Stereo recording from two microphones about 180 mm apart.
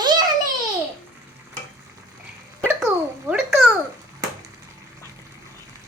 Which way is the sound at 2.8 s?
5° right (ahead or behind).